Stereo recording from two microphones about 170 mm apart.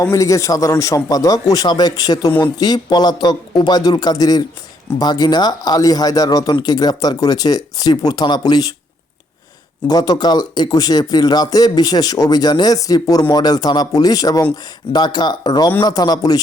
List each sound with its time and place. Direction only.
0.0 s speech: 20° left (ahead or behind)
9.8 s speech: 25° left (ahead or behind)